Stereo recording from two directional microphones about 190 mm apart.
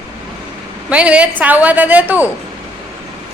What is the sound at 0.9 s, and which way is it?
A woman's voice, 5° right (ahead or behind).